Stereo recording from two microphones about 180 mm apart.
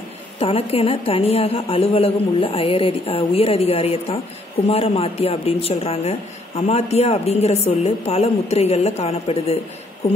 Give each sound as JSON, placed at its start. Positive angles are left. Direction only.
{"t": 0.4, "sound": "a woman's voice", "side_deg": 35}